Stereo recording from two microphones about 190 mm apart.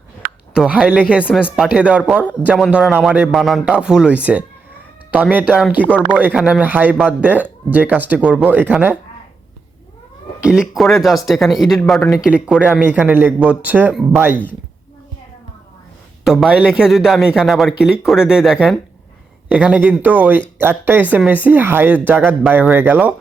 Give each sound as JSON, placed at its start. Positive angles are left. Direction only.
{"t": 0.5, "sound": "a man's voice", "side_deg": -5}
{"t": 10.4, "sound": "a man's voice", "side_deg": 0}
{"t": 16.2, "sound": "a man's voice", "side_deg": -5}